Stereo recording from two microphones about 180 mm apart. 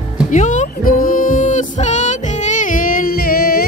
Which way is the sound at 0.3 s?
45° left (ahead or behind).